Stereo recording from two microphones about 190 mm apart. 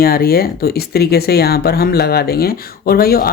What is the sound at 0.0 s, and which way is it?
Speech, 50° left (ahead or behind).